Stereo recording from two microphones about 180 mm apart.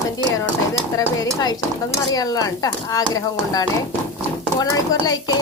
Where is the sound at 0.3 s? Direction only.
20° left (ahead or behind).